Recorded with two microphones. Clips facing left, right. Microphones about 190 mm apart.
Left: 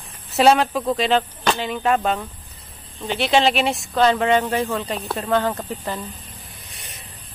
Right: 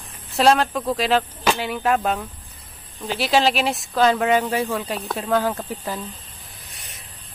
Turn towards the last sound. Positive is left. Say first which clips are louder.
# left 2 dB
turn(degrees=0)  # may be behind; listen again after turning